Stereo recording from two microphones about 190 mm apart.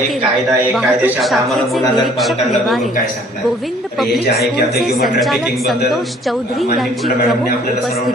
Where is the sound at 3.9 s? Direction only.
Centre (ahead or behind).